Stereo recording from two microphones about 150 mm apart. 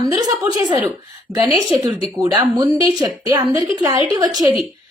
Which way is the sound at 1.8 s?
25° right (ahead or behind).